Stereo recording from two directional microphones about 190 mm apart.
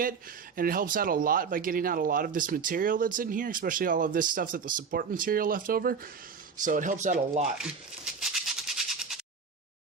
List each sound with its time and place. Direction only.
0.5 s speech: 50° right (ahead or behind)
7.6 s maraca: centre (ahead or behind)